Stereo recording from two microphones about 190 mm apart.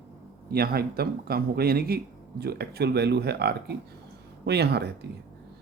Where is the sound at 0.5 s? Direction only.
55° right (ahead or behind).